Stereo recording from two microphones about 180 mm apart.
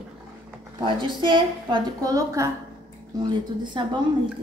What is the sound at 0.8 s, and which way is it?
Speech, 25° right (ahead or behind).